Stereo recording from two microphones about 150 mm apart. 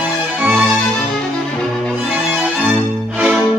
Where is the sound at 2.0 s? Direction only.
Centre (ahead or behind).